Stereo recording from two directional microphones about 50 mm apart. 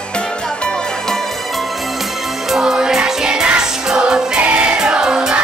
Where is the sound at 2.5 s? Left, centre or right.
Centre.